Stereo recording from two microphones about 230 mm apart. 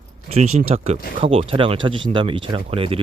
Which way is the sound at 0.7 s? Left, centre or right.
Right.